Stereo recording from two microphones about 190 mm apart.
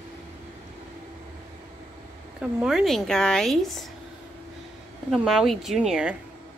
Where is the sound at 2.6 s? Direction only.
Centre (ahead or behind).